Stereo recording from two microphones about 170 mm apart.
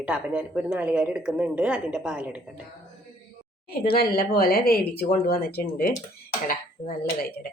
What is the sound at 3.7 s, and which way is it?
Speech, 60° left (ahead or behind).